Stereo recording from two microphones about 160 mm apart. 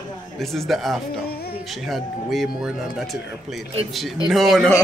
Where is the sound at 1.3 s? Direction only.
70° left (ahead or behind).